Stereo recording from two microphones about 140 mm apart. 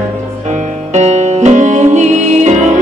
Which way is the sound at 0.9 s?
55° right (ahead or behind).